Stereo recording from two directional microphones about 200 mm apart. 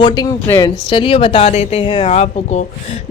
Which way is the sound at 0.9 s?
25° left (ahead or behind).